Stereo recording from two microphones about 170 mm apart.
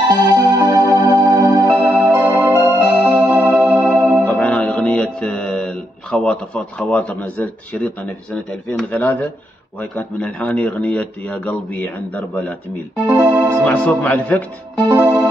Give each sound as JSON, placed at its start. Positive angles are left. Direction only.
{"t": 0.3, "sound": "music", "side_deg": -25}
{"t": 1.7, "sound": "music", "side_deg": -10}
{"t": 4.4, "sound": "a man's voice", "side_deg": 10}
{"t": 12.9, "sound": "speech", "side_deg": -10}
{"t": 13.7, "sound": "a man's voice", "side_deg": 10}
{"t": 15.0, "sound": "music", "side_deg": -10}